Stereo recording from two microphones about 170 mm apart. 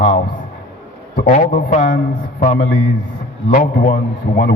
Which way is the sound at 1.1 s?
45° left (ahead or behind).